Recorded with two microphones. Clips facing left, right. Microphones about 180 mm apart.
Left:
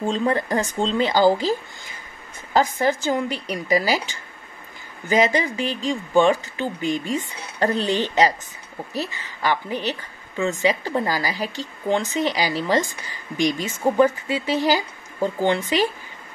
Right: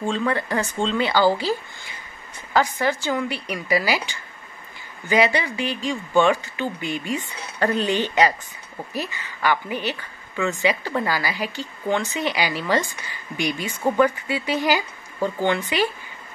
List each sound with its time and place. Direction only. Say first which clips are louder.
0.0 s speech: left 2 dB; 35° left (ahead or behind)
2.5 s speech: left 2 dB; 40° left (ahead or behind)
5.0 s a woman's voice: left 1 dB; 40° left (ahead or behind)